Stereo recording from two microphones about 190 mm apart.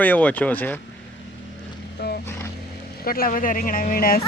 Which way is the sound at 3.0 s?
50° left (ahead or behind).